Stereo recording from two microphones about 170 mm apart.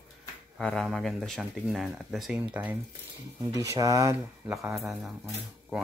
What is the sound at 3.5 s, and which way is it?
Speech, 20° right (ahead or behind).